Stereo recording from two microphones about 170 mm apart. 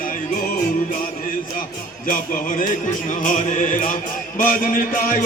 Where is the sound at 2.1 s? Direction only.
50° left (ahead or behind).